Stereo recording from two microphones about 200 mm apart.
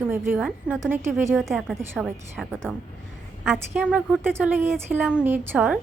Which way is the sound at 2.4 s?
Centre (ahead or behind).